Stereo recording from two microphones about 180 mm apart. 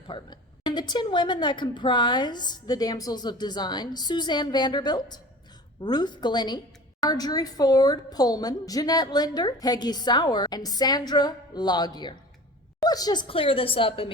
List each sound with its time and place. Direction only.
0.1 s a woman's voice: 25° left (ahead or behind)